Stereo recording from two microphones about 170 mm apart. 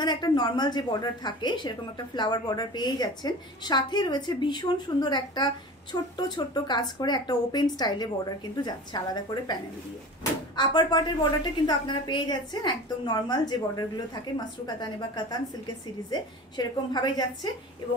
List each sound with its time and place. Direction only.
0.0 s speech: 25° left (ahead or behind)